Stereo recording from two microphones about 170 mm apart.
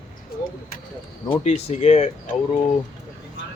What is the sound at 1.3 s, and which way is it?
Speech, 40° left (ahead or behind).